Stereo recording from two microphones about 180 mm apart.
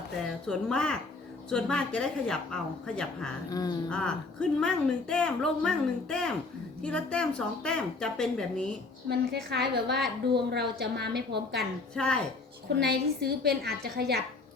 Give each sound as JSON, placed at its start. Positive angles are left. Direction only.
{"t": 0.4, "sound": "speech", "side_deg": 5}
{"t": 3.5, "sound": "speech", "side_deg": 20}
{"t": 3.8, "sound": "speech", "side_deg": 5}
{"t": 9.0, "sound": "a woman's voice", "side_deg": -65}
{"t": 11.9, "sound": "speech", "side_deg": 5}
{"t": 12.8, "sound": "a woman's voice", "side_deg": -70}